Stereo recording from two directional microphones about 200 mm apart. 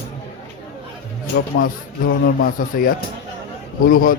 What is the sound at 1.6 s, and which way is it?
A man's voice, 45° left (ahead or behind).